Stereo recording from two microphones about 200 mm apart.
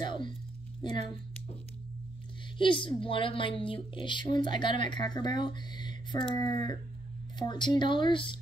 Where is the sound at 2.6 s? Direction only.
25° left (ahead or behind).